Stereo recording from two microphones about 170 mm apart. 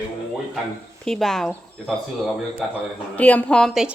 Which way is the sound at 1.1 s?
Centre (ahead or behind).